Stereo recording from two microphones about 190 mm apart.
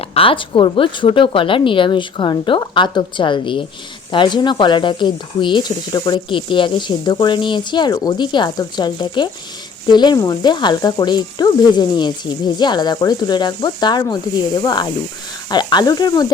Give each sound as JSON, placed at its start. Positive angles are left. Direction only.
{"t": 0.0, "sound": "speech", "side_deg": 30}